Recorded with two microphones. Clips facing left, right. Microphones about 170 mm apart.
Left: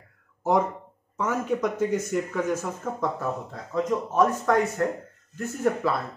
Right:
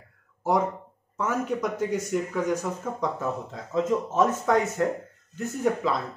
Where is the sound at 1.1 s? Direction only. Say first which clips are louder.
Left 1 dB; 10° right (ahead or behind).